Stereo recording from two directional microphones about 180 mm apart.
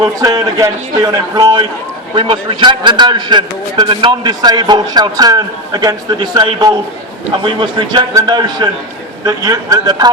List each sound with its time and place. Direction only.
0.0 s a man's voice: 20° right (ahead or behind)